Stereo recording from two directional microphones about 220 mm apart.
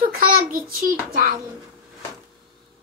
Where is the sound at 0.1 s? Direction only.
40° right (ahead or behind).